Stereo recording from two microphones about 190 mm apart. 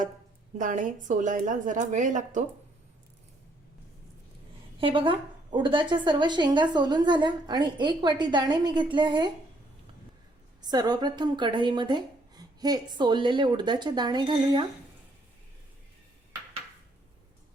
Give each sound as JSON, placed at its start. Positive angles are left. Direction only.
{"t": 0.6, "sound": "a woman's voice", "side_deg": -45}
{"t": 4.8, "sound": "a woman's voice", "side_deg": -25}
{"t": 10.6, "sound": "a woman's voice", "side_deg": -20}